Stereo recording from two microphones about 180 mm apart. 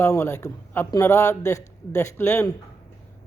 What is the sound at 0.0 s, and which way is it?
Speech, 15° left (ahead or behind).